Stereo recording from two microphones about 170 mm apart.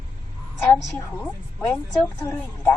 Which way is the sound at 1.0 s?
10° left (ahead or behind).